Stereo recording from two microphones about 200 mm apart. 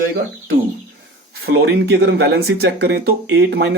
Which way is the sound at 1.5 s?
55° right (ahead or behind).